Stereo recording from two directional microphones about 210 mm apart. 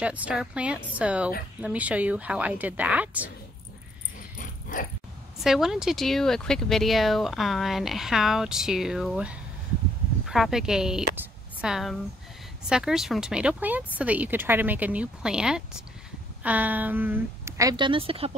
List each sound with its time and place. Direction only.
0.0 s speech: 5° right (ahead or behind)
4.4 s dog: 40° left (ahead or behind)
5.4 s a woman's voice: centre (ahead or behind); by 18.3 s 25° right (ahead or behind)